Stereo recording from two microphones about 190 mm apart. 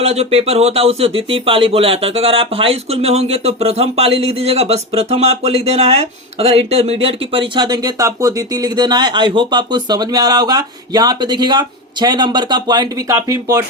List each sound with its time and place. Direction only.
0.0 s speech: 35° right (ahead or behind); by 13.7 s 20° right (ahead or behind)